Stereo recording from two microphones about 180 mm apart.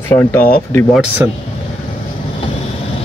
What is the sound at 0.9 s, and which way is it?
Speech, 10° right (ahead or behind).